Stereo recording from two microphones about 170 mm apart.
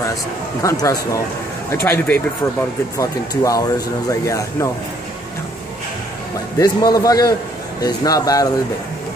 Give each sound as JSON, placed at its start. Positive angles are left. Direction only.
{"t": 0.6, "sound": "a man's voice", "side_deg": 20}
{"t": 6.6, "sound": "a man's voice", "side_deg": 20}